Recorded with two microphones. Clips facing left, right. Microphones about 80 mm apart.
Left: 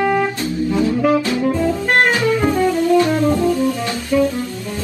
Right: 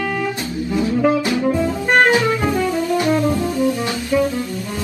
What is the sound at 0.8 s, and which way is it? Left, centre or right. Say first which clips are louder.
Jazz: even; right.